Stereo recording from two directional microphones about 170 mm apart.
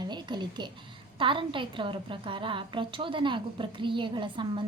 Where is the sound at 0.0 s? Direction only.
25° right (ahead or behind).